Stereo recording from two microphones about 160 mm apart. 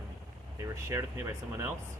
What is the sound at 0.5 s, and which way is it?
Speech, 20° right (ahead or behind).